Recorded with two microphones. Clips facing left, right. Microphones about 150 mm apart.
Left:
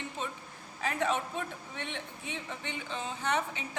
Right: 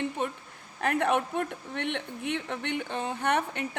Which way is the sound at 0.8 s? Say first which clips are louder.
Right 5 dB; 60° right (ahead or behind).